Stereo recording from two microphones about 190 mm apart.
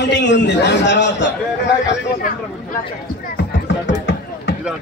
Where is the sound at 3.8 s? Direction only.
65° left (ahead or behind).